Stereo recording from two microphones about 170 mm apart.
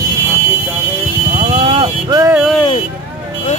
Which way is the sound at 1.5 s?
35° right (ahead or behind).